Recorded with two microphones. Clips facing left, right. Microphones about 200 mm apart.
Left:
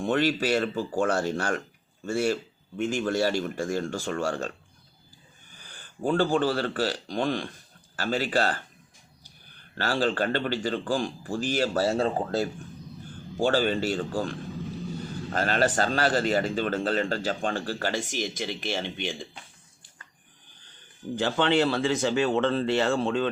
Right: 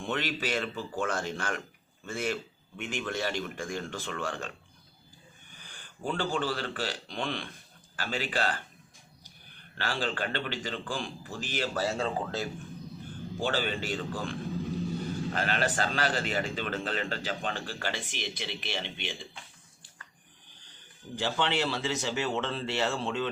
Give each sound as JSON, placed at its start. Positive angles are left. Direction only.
{"t": 0.0, "sound": "a man's voice", "side_deg": 45}
{"t": 6.0, "sound": "a man's voice", "side_deg": 50}
{"t": 9.7, "sound": "a man's voice", "side_deg": 45}
{"t": 21.2, "sound": "speech", "side_deg": 55}